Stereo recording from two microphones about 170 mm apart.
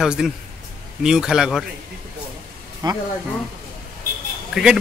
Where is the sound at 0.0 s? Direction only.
5° right (ahead or behind).